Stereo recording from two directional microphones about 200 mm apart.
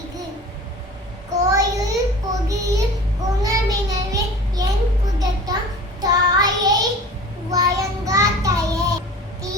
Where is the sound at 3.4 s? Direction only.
15° right (ahead or behind).